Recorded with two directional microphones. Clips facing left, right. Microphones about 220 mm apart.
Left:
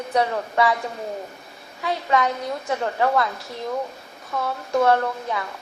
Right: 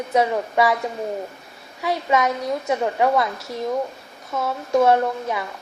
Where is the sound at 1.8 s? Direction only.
20° right (ahead or behind).